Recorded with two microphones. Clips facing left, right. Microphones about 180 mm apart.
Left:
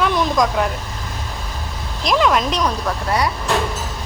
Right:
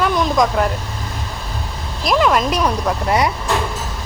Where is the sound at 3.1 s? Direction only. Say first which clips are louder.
Right 2 dB; 20° right (ahead or behind).